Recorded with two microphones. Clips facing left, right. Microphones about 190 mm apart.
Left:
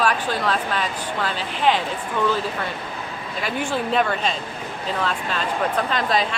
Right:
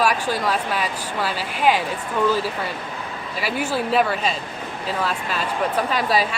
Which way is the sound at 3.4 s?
5° right (ahead or behind).